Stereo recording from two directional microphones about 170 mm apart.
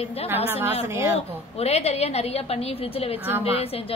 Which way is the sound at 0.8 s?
15° right (ahead or behind).